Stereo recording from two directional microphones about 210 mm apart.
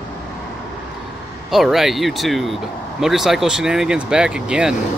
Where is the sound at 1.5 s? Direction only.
Centre (ahead or behind).